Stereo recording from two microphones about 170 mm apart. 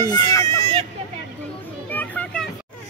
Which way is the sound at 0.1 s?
20° left (ahead or behind).